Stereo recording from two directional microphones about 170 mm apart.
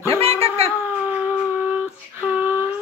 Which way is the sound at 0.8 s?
10° right (ahead or behind).